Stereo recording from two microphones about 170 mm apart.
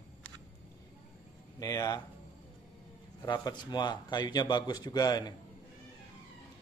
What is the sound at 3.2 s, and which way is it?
Speech, 25° left (ahead or behind).